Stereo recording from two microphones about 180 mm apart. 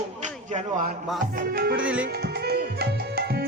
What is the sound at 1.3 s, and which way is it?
Music, 55° right (ahead or behind).